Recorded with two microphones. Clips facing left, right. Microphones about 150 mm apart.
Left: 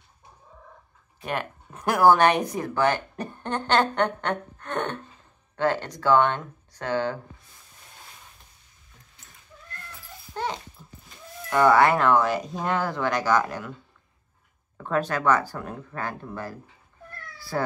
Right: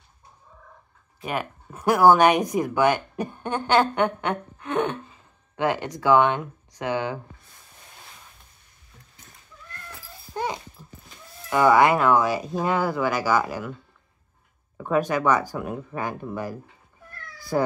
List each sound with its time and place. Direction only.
1.2 s speech: 5° right (ahead or behind)
10.3 s dog: 10° right (ahead or behind)
11.5 s speech: 10° right (ahead or behind)
14.8 s speech: 10° right (ahead or behind)
17.4 s cat: 15° right (ahead or behind)